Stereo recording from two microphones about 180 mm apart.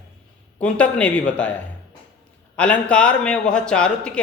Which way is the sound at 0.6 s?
5° left (ahead or behind).